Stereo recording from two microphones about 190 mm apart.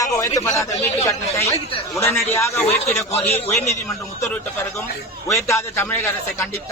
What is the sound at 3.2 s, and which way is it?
Speech, 30° left (ahead or behind).